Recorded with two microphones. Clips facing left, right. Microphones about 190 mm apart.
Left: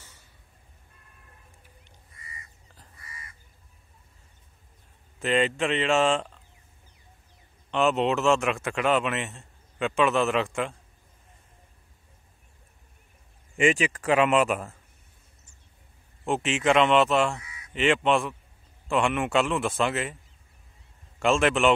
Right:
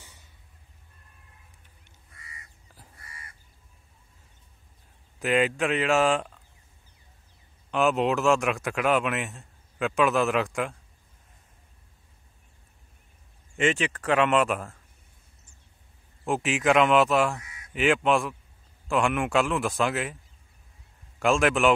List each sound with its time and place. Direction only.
3.0 s crow: 55° right (ahead or behind)
5.2 s speech: 5° right (ahead or behind)
7.7 s speech: centre (ahead or behind)
13.6 s speech: 10° left (ahead or behind)
16.3 s speech: centre (ahead or behind)
21.2 s speech: centre (ahead or behind)